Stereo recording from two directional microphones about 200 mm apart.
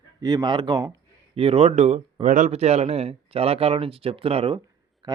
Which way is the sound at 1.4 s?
30° right (ahead or behind).